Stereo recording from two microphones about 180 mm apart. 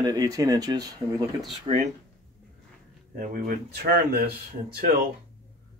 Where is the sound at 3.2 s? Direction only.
55° right (ahead or behind).